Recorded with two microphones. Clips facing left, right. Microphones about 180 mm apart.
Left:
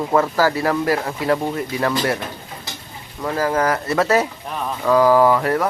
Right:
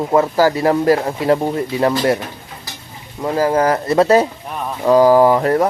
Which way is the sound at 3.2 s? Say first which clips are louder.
Right 4 dB; 25° right (ahead or behind).